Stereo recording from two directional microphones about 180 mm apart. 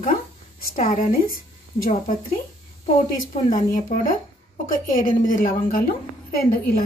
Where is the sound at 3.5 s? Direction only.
45° left (ahead or behind).